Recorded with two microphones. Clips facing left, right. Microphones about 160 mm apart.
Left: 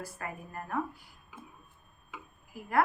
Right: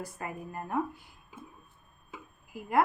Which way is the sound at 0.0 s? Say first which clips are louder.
Right 2 dB; 15° right (ahead or behind).